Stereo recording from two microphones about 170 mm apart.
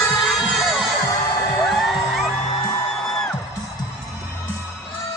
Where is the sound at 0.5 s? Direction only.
Centre (ahead or behind).